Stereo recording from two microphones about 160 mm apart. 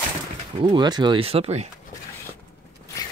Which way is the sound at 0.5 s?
25° right (ahead or behind).